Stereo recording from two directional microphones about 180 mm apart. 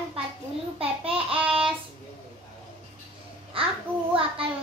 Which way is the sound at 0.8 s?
30° right (ahead or behind).